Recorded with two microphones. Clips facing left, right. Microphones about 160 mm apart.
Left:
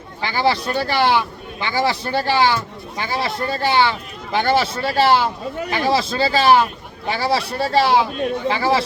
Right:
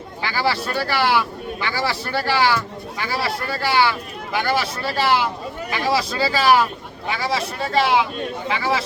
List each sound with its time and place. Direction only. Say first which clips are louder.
0.2 s speech: left 3 dB; 20° left (ahead or behind)